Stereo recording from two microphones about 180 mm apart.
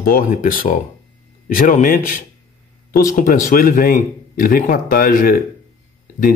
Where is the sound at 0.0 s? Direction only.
50° left (ahead or behind).